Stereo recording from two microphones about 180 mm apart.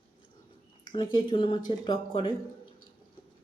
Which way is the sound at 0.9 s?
25° left (ahead or behind).